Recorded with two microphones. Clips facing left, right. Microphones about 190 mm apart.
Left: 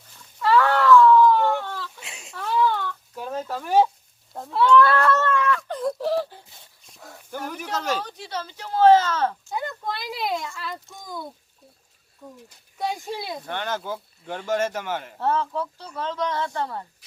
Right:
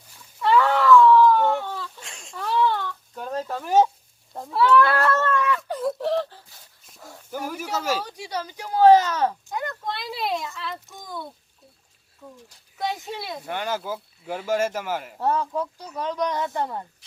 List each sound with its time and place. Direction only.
0.2 s cat: 5° right (ahead or behind)
2.0 s a sound: 5° left (ahead or behind)
2.6 s a sound: 10° right (ahead or behind)
3.2 s a sound: 5° left (ahead or behind)
3.4 s speech: centre (ahead or behind)
5.3 s a sound: 15° right (ahead or behind)
5.5 s wail: 5° right (ahead or behind)
6.8 s dog: centre (ahead or behind)
7.3 s speech: 5° right (ahead or behind)
9.6 s speech: centre (ahead or behind)
12.2 s speech: 20° left (ahead or behind)
12.7 s speech: centre (ahead or behind); by 16.8 s 20° right (ahead or behind)